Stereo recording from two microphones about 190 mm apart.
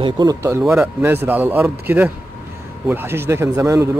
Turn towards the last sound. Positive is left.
turn(degrees=-15)  # may be behind; listen again after turning